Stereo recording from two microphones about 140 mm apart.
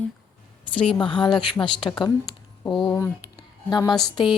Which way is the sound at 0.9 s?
35° left (ahead or behind).